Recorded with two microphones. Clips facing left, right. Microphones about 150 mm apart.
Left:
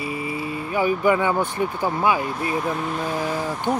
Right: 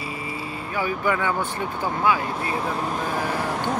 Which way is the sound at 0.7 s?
15° left (ahead or behind).